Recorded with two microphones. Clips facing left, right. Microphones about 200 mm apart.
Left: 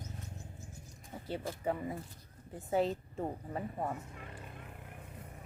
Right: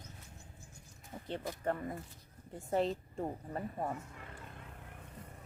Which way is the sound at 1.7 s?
5° left (ahead or behind).